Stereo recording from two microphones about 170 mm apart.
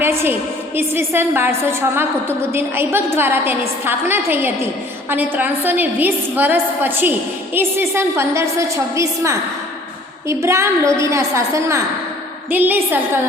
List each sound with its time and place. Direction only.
0.0 s a woman's voice: 15° right (ahead or behind)